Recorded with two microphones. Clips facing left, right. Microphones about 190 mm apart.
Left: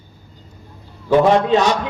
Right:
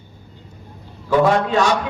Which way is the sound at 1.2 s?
20° left (ahead or behind).